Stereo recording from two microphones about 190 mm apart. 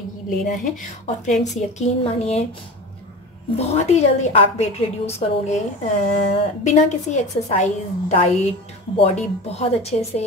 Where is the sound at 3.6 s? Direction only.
35° left (ahead or behind).